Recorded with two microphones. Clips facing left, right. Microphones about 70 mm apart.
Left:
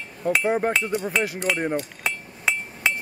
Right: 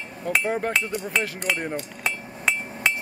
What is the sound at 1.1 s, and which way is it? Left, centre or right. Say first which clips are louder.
Hammer: left 2 dB; centre.